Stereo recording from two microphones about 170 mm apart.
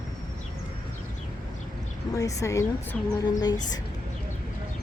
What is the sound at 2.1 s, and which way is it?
Speech, 20° left (ahead or behind).